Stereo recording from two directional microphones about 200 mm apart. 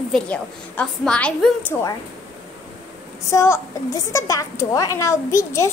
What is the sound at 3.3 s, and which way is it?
A woman's voice, 15° left (ahead or behind).